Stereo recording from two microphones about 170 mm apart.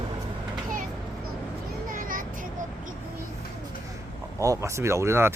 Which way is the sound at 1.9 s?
55° right (ahead or behind).